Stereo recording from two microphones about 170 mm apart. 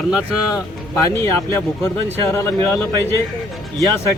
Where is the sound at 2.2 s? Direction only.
15° left (ahead or behind).